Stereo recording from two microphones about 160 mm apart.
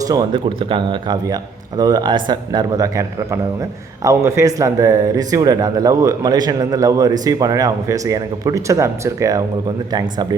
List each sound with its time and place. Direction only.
0.1 s a man's voice: 30° right (ahead or behind)